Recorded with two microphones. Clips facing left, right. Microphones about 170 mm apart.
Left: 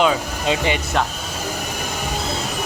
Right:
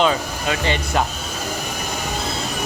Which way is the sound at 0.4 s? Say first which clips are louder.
Left 2 dB; 15° left (ahead or behind).